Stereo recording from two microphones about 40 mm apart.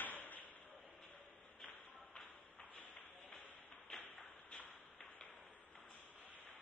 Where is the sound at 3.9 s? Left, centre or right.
Centre.